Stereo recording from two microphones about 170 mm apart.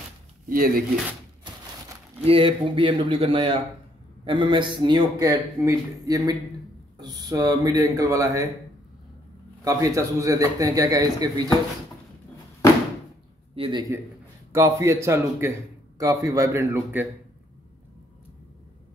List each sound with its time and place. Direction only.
0.5 s speech: 55° right (ahead or behind)
2.2 s a man's voice: 30° right (ahead or behind)
9.7 s a man's voice: 20° right (ahead or behind)
13.6 s a man's voice: 25° right (ahead or behind)